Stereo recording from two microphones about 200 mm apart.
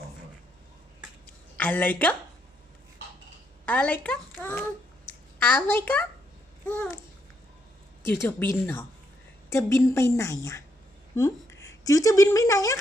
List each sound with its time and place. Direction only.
1.5 s a woman's voice: 10° left (ahead or behind)
3.7 s a woman's voice: 5° left (ahead or behind)
8.0 s a woman's voice: 10° left (ahead or behind)